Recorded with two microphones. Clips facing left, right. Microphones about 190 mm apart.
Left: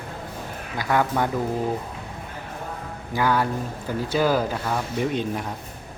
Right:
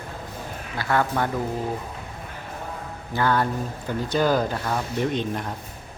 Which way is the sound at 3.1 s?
10° left (ahead or behind).